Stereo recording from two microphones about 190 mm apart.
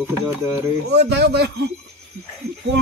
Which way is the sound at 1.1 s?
60° right (ahead or behind).